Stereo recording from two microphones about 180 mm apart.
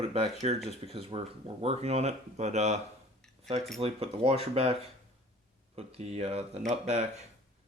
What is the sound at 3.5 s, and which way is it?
Speech, centre (ahead or behind).